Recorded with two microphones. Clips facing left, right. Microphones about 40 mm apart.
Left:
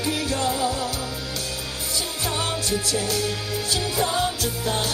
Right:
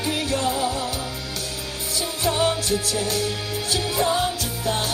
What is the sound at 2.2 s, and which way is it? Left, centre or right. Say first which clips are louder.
Music: right 6 dB; right.